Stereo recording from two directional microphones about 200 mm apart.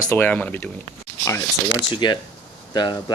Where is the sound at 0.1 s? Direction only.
10° left (ahead or behind).